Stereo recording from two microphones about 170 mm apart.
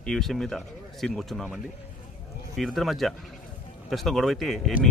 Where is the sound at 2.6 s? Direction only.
Centre (ahead or behind).